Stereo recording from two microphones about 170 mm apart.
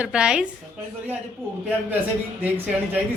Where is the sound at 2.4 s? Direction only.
10° right (ahead or behind).